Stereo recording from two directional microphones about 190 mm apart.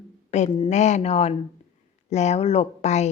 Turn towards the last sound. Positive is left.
turn(degrees=35)  # may be behind; listen again after turning